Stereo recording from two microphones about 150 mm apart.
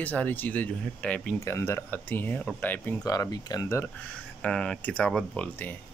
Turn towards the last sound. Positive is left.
turn(degrees=0)  # may be behind; listen again after turning